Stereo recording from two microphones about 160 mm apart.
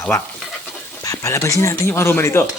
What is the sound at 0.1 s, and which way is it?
Speech, 15° left (ahead or behind).